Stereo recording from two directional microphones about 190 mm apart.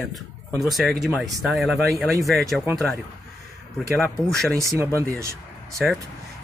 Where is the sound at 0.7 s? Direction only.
Centre (ahead or behind).